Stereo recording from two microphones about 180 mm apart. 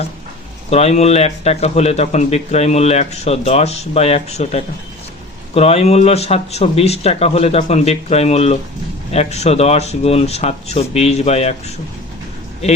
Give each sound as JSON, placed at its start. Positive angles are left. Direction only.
{"t": 0.7, "sound": "a man's voice", "side_deg": 35}